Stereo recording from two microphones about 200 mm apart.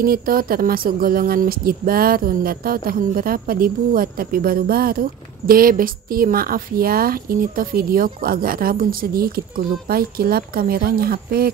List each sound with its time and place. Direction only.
0.0 s speech: 45° right (ahead or behind)